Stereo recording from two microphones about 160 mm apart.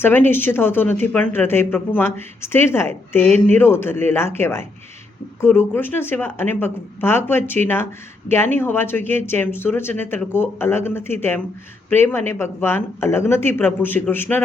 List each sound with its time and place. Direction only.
0.0 s speech: 15° left (ahead or behind)